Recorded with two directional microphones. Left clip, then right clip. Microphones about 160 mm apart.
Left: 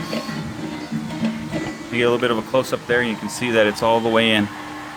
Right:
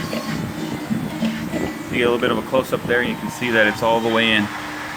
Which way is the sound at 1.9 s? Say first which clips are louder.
Even; 65° left (ahead or behind).